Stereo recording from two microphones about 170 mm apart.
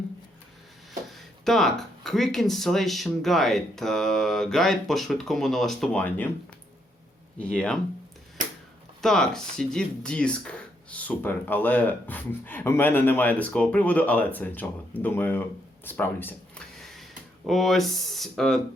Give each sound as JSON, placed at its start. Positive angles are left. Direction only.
{"t": 1.1, "sound": "speech", "side_deg": 0}
{"t": 7.3, "sound": "speech", "side_deg": 5}
{"t": 9.0, "sound": "speech", "side_deg": 0}
{"t": 16.8, "sound": "speech", "side_deg": 0}